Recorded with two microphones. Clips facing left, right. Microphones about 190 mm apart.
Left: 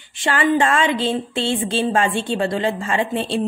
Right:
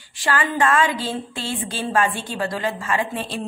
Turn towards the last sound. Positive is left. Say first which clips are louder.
# left 4 dB
turn(degrees=25)  # may be behind; listen again after turning